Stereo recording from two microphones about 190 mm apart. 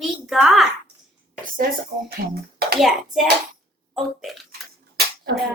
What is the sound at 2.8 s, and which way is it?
A child's voice, centre (ahead or behind).